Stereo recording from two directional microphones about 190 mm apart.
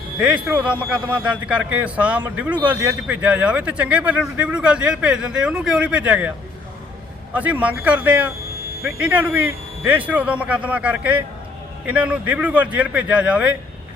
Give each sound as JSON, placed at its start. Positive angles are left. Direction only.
{"t": 0.2, "sound": "a man's voice", "side_deg": -5}
{"t": 7.3, "sound": "a man's voice", "side_deg": -10}